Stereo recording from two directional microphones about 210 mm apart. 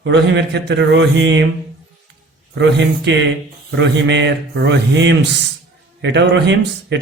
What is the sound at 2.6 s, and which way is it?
Speech, 55° right (ahead or behind).